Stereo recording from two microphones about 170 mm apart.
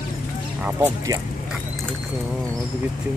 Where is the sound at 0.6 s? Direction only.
10° right (ahead or behind).